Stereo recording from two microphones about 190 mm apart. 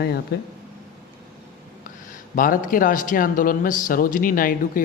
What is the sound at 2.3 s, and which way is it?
Speech, 45° left (ahead or behind).